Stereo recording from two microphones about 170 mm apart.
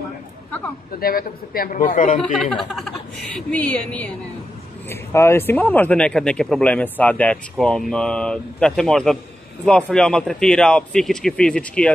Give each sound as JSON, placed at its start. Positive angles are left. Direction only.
{"t": 0.9, "sound": "a man's voice", "side_deg": 60}
{"t": 2.5, "sound": "speech", "side_deg": 0}